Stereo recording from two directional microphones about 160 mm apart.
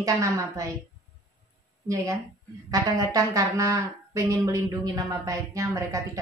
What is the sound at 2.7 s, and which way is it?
Speech, 20° right (ahead or behind).